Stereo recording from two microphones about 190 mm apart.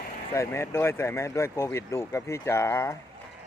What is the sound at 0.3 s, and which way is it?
Speech, 15° left (ahead or behind).